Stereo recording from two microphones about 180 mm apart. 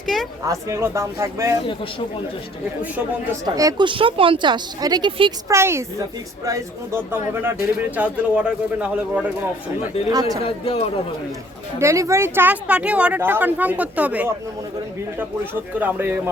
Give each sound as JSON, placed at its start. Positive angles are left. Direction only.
{"t": 0.4, "sound": "speech", "side_deg": -15}
{"t": 3.4, "sound": "speech", "side_deg": -20}
{"t": 5.5, "sound": "speech", "side_deg": -15}
{"t": 10.1, "sound": "speech", "side_deg": -20}
{"t": 10.4, "sound": "a man's voice", "side_deg": 35}
{"t": 11.8, "sound": "speech", "side_deg": -15}
{"t": 15.8, "sound": "speech", "side_deg": -10}